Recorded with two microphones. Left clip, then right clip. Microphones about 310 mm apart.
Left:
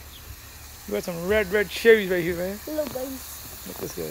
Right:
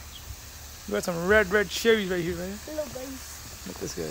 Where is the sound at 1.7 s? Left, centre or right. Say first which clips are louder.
Left 6 dB; right.